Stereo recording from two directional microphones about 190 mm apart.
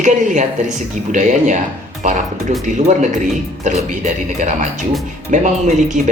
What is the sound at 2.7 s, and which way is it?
Speech, 40° right (ahead or behind).